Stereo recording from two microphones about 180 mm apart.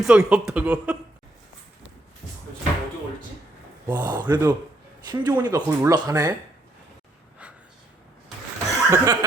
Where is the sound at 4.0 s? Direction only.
25° right (ahead or behind).